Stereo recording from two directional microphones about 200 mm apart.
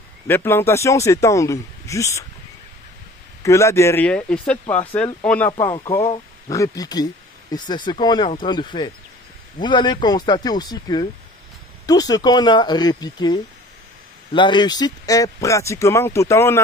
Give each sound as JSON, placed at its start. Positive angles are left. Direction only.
{"t": 0.3, "sound": "speech", "side_deg": 10}
{"t": 3.4, "sound": "speech", "side_deg": 15}
{"t": 5.5, "sound": "speech", "side_deg": 20}